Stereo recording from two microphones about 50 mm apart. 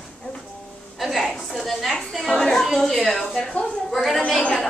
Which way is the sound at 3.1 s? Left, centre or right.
Centre.